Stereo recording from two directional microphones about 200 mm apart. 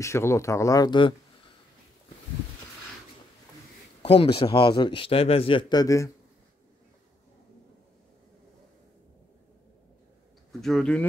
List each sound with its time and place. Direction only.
0.0 s speech: 15° left (ahead or behind)
4.0 s a man's voice: 30° left (ahead or behind)
10.6 s speech: centre (ahead or behind)